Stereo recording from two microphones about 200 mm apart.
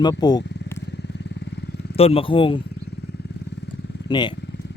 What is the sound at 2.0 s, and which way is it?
Speech, 30° left (ahead or behind).